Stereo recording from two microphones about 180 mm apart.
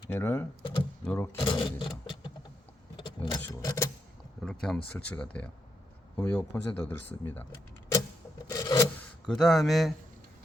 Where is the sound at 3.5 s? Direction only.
20° left (ahead or behind).